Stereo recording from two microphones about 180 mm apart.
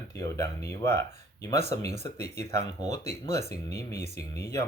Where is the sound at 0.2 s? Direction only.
15° left (ahead or behind).